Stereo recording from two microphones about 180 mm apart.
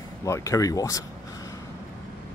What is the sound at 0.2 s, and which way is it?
Speech, 15° left (ahead or behind).